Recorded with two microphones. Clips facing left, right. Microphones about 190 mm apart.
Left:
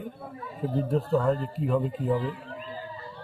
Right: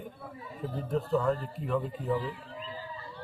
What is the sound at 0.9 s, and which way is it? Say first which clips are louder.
Speech: left 2 dB; 35° left (ahead or behind).